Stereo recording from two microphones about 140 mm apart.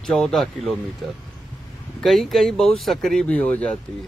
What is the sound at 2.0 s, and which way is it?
Speech, centre (ahead or behind).